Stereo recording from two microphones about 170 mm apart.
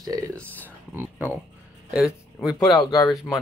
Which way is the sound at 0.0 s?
20° right (ahead or behind).